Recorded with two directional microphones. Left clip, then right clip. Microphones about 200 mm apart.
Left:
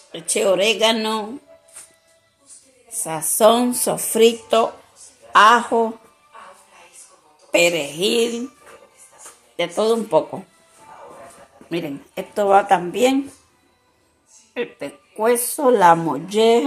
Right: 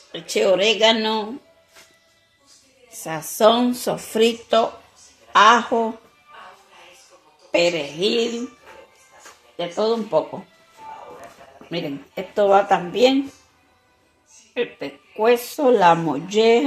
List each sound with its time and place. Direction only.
0.1 s a woman's voice: 5° left (ahead or behind)
2.9 s a woman's voice: 10° left (ahead or behind)
7.5 s a woman's voice: 10° left (ahead or behind)
9.6 s speech: 25° left (ahead or behind)
11.7 s a woman's voice: 10° left (ahead or behind)
14.5 s a woman's voice: 10° left (ahead or behind)